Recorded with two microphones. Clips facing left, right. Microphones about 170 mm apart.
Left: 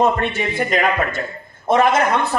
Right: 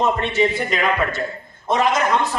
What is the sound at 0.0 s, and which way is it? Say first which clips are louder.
A man's voice: even; 55° left (ahead or behind).